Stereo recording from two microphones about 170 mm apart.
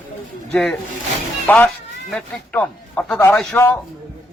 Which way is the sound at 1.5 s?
5° left (ahead or behind).